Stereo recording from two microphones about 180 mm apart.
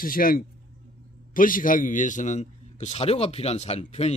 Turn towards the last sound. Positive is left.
turn(degrees=35)  # may be behind; listen again after turning